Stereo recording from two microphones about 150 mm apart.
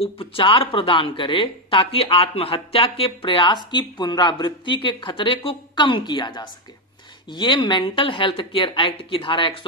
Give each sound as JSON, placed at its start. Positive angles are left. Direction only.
{"t": 0.0, "sound": "speech", "side_deg": 40}